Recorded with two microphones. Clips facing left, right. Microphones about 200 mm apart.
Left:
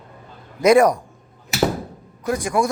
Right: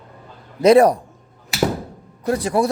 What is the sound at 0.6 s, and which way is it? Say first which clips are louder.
Speech: right 2 dB; 30° right (ahead or behind).